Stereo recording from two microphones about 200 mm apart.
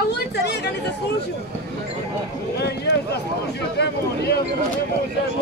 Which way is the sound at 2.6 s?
55° left (ahead or behind).